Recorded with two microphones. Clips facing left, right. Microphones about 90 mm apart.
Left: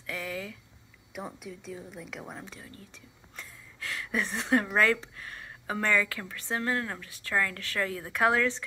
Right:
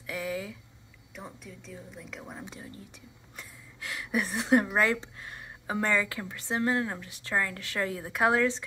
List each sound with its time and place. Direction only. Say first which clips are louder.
0.0 s a sound: right 2 dB; 20° right (ahead or behind)
1.1 s speech: left 5 dB; 10° left (ahead or behind)
2.4 s a woman's voice: right 3 dB; 25° right (ahead or behind)